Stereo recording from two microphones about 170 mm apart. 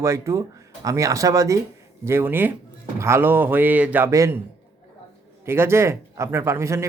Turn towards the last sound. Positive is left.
turn(degrees=-15)  # may be behind; listen again after turning